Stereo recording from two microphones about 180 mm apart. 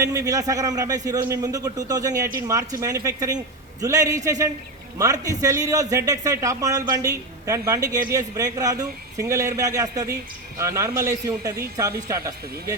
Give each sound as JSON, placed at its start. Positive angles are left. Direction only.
{"t": 0.0, "sound": "a man's voice", "side_deg": -20}